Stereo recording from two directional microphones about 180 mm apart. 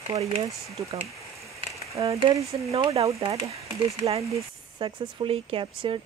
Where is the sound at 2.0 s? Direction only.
30° right (ahead or behind).